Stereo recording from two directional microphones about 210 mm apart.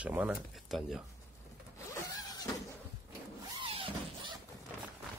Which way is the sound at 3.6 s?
25° right (ahead or behind).